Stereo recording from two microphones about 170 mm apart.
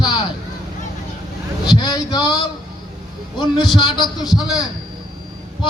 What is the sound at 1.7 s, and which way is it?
Speech, 25° left (ahead or behind).